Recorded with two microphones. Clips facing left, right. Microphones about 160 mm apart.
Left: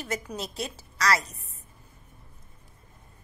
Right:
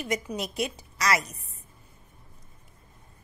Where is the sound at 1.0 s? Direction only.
20° right (ahead or behind).